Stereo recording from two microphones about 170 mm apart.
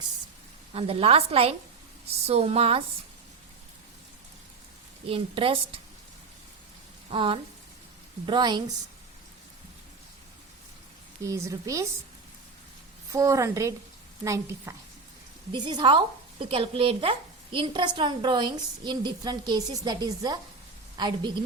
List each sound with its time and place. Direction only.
0.7 s a woman's voice: 35° right (ahead or behind)
5.0 s a woman's voice: 35° right (ahead or behind)
7.1 s a woman's voice: 30° right (ahead or behind)
11.2 s a woman's voice: 15° right (ahead or behind)
13.1 s a woman's voice: 20° right (ahead or behind)